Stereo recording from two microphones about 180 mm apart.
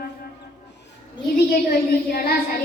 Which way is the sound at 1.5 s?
55° left (ahead or behind).